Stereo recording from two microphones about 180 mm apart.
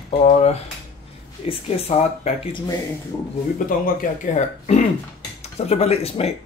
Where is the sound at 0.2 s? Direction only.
35° left (ahead or behind).